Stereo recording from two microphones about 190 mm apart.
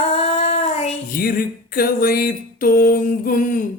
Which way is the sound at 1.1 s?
50° left (ahead or behind).